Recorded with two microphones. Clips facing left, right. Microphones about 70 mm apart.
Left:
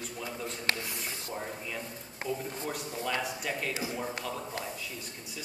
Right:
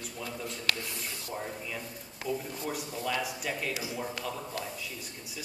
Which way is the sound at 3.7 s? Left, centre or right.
Left.